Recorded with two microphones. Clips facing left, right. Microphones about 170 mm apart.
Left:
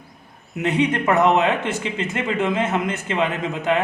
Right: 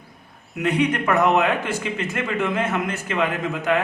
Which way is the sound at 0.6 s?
25° left (ahead or behind).